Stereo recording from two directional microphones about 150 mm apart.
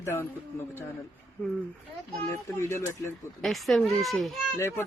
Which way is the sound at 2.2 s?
20° left (ahead or behind).